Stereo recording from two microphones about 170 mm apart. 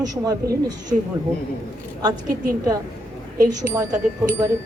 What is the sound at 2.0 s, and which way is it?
A woman's voice, 25° right (ahead or behind).